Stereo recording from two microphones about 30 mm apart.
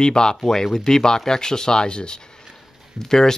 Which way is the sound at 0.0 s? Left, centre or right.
Left.